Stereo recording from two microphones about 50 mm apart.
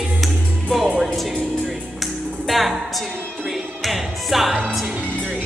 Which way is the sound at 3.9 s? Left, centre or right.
Centre.